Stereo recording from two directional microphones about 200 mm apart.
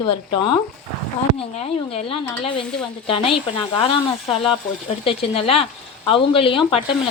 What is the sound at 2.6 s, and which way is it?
Speech, 5° left (ahead or behind).